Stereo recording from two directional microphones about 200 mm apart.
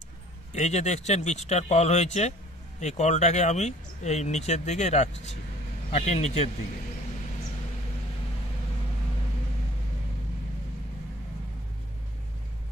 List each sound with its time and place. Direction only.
0.5 s speech: 35° left (ahead or behind)